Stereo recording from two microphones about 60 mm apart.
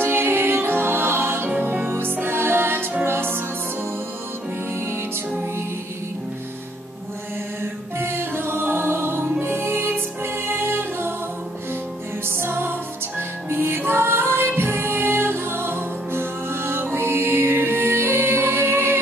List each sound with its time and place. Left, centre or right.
0.0 s music: right
1.5 s music: right
8.0 s music: right
12.3 s music: right